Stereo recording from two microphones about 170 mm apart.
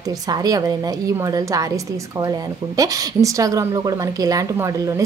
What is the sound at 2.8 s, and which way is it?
Speech, 20° right (ahead or behind).